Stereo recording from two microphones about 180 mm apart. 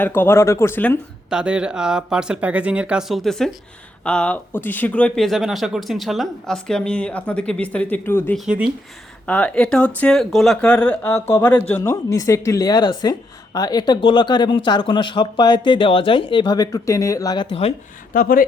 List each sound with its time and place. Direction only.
0.0 s speech: 10° left (ahead or behind)
1.3 s speech: 5° right (ahead or behind)
8.4 s speech: 5° right (ahead or behind)
9.2 s speech: 5° left (ahead or behind); by 17.7 s 35° left (ahead or behind)
18.1 s speech: 50° left (ahead or behind)